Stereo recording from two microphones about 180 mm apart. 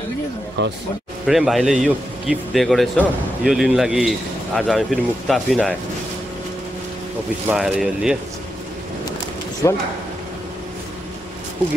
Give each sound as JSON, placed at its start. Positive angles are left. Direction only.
{"t": 0.6, "sound": "speech", "side_deg": -75}
{"t": 1.2, "sound": "speech", "side_deg": 0}
{"t": 7.4, "sound": "speech", "side_deg": -5}
{"t": 9.6, "sound": "speech", "side_deg": 15}